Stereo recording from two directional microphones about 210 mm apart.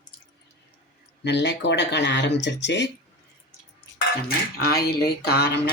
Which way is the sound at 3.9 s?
45° left (ahead or behind).